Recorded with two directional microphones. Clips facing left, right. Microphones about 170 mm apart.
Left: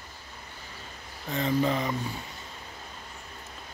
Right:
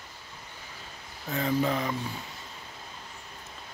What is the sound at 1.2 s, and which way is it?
Speech, centre (ahead or behind).